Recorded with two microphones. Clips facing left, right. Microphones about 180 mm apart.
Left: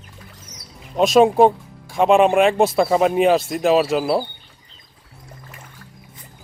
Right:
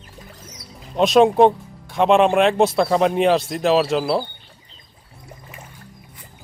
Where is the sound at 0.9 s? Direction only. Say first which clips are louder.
Even; centre (ahead or behind).